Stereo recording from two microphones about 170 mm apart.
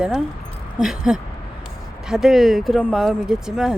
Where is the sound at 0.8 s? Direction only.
5° right (ahead or behind).